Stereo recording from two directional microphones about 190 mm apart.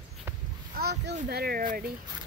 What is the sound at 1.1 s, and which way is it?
Speech, 55° right (ahead or behind).